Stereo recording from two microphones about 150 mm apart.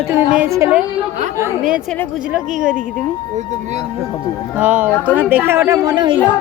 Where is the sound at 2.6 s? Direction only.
5° right (ahead or behind).